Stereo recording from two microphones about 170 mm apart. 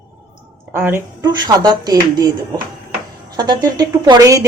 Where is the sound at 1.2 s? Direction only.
25° right (ahead or behind).